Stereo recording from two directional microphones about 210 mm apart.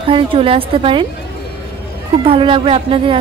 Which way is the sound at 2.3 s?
25° right (ahead or behind).